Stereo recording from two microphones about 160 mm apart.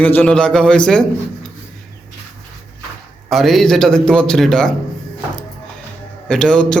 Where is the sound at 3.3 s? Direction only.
Centre (ahead or behind).